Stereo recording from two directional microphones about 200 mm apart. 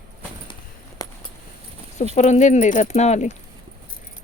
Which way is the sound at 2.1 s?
35° left (ahead or behind).